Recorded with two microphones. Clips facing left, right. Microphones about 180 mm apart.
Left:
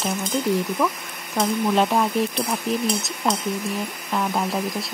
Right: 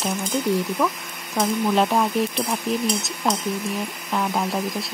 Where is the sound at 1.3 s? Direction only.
Centre (ahead or behind).